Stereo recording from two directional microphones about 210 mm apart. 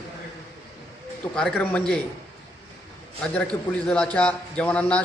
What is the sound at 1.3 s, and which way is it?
Speech, 5° left (ahead or behind).